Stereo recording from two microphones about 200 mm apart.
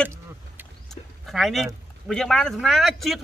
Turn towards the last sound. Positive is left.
turn(degrees=0)  # may be behind; listen again after turning